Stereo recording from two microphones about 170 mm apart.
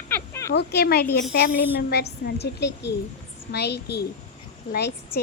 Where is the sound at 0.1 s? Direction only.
15° left (ahead or behind).